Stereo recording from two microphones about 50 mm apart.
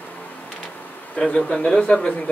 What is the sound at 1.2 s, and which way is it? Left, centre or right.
Speech, centre.